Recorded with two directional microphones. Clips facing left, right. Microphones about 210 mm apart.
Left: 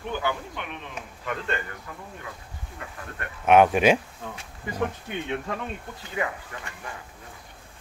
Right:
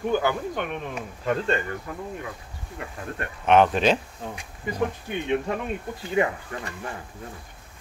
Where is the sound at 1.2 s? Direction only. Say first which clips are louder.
Right 6 dB; 35° right (ahead or behind).